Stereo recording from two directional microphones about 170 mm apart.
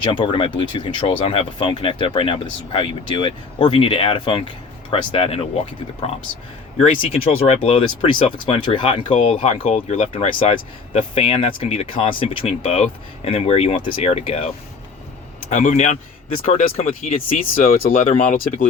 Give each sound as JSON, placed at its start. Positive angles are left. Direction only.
{"t": 0.0, "sound": "speech", "side_deg": 30}
{"t": 6.7, "sound": "speech", "side_deg": 35}
{"t": 17.2, "sound": "speech", "side_deg": 55}